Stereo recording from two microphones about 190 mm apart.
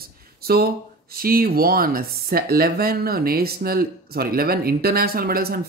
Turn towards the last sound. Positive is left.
turn(degrees=-50)  # may be behind; listen again after turning